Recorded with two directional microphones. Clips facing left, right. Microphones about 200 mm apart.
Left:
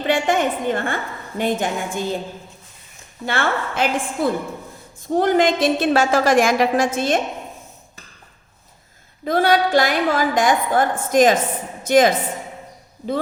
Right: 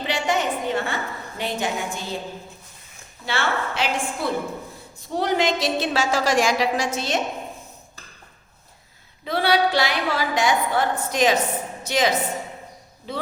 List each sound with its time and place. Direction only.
0.0 s a woman's voice: 50° left (ahead or behind)
3.2 s a woman's voice: 50° left (ahead or behind)
9.2 s a woman's voice: 45° left (ahead or behind)